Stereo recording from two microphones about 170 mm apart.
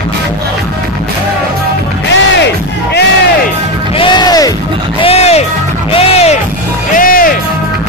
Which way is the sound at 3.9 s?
25° left (ahead or behind).